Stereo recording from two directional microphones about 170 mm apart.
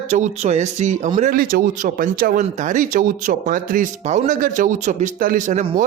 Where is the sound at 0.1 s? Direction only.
40° right (ahead or behind).